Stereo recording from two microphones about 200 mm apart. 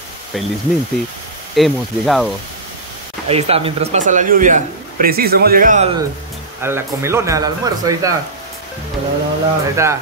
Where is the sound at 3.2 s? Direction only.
30° right (ahead or behind).